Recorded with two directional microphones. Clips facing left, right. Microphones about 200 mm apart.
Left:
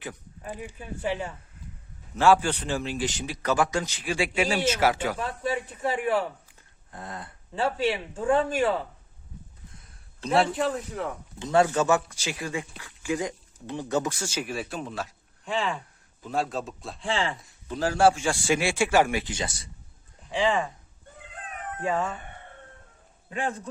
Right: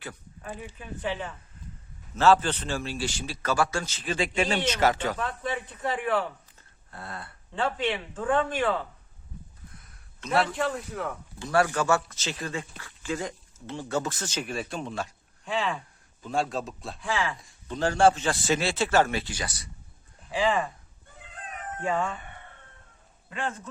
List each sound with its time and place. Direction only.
0.0 s speech: 15° left (ahead or behind)
6.6 s a sound: 15° left (ahead or behind)
7.5 s speech: 5° left (ahead or behind)
9.8 s a sound: 30° left (ahead or behind)
10.5 s a man's voice: centre (ahead or behind)
11.3 s a man's voice: 20° left (ahead or behind); by 17.0 s centre (ahead or behind)
17.0 s speech: 30° left (ahead or behind)
17.7 s speech: 5° left (ahead or behind); by 19.7 s 25° left (ahead or behind)
20.3 s a man's voice: centre (ahead or behind)
21.8 s a man's voice: 5° left (ahead or behind)